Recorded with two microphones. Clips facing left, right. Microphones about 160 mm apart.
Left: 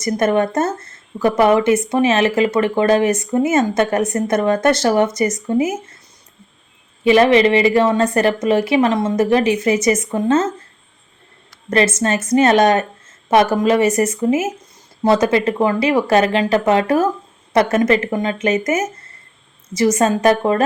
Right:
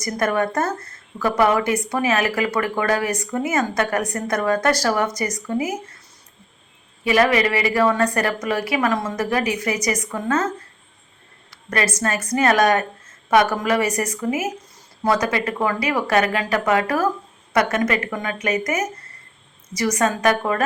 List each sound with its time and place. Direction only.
0.0 s a woman's voice: 25° left (ahead or behind)
7.0 s a woman's voice: 25° left (ahead or behind)
11.7 s a woman's voice: 25° left (ahead or behind)